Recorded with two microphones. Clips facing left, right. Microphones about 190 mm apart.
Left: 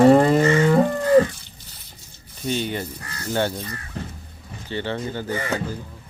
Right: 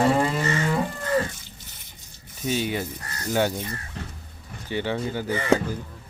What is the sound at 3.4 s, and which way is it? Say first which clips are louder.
Speech: even; 20° right (ahead or behind).